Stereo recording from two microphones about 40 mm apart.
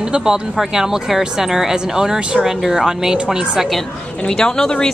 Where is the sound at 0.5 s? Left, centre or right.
Centre.